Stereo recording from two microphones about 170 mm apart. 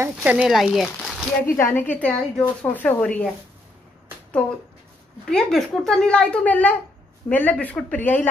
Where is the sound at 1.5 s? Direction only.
10° left (ahead or behind).